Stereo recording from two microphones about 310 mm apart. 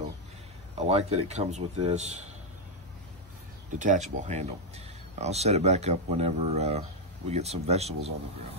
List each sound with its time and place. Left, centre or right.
0.7 s speech: centre
3.7 s speech: right